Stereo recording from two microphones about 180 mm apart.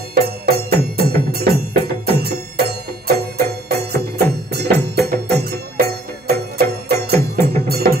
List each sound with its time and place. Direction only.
0.1 s music: 60° right (ahead or behind)